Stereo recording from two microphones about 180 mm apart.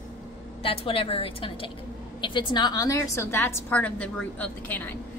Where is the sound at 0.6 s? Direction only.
30° left (ahead or behind).